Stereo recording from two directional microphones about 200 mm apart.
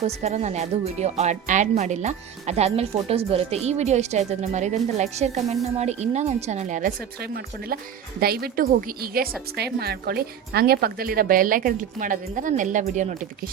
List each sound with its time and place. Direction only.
0.0 s speech: 35° right (ahead or behind)